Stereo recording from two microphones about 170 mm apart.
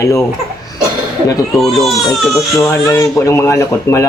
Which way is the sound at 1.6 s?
Centre (ahead or behind).